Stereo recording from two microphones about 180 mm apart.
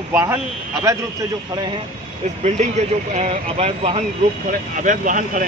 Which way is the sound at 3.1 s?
35° right (ahead or behind).